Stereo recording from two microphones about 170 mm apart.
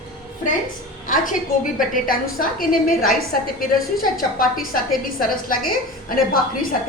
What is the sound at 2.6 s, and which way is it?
A woman's voice, 55° left (ahead or behind).